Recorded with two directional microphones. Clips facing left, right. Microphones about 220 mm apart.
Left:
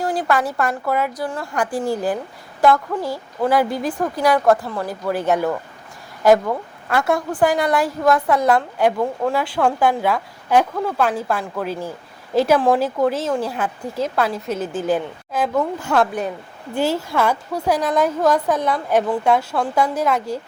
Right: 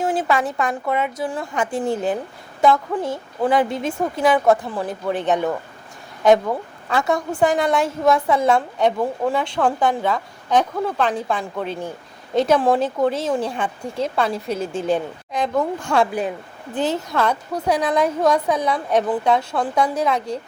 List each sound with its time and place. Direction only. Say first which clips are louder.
0.1 s a woman's voice: even; centre (ahead or behind)
1.6 s a woman's voice: even; 20° right (ahead or behind)
2.6 s a woman's voice: left 1 dB; centre (ahead or behind)